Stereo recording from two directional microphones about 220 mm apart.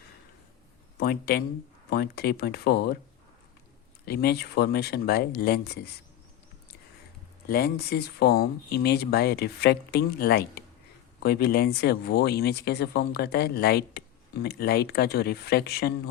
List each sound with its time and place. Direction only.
0.9 s speech: 45° left (ahead or behind)
4.0 s speech: 45° left (ahead or behind)
7.4 s speech: 45° left (ahead or behind)